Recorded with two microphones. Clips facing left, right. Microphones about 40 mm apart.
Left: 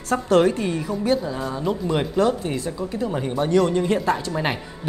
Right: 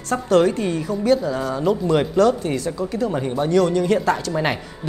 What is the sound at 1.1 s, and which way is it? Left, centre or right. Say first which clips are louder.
A woman's voice: right 4 dB; centre.